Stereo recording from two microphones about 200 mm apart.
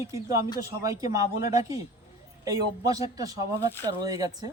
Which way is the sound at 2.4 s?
15° right (ahead or behind).